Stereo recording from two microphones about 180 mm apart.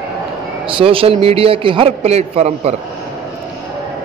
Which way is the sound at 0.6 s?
30° right (ahead or behind).